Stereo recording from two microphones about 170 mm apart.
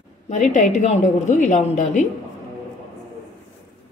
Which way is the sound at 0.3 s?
45° left (ahead or behind).